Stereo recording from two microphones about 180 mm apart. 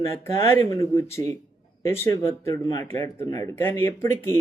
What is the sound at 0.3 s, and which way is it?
A man's voice, 15° left (ahead or behind).